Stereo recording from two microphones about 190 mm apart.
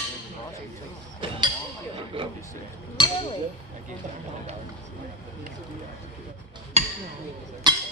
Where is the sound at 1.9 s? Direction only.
25° right (ahead or behind).